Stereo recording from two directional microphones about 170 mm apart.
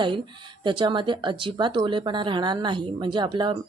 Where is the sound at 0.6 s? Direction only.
30° right (ahead or behind).